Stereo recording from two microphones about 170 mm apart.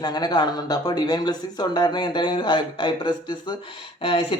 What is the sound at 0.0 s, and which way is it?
Speech, 25° left (ahead or behind).